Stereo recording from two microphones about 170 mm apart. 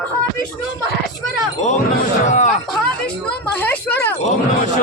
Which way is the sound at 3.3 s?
10° left (ahead or behind).